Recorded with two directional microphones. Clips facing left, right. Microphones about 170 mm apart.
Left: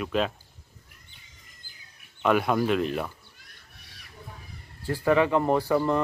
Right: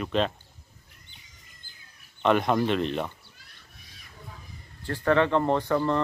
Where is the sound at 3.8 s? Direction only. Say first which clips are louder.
Left 1 dB; 70° left (ahead or behind).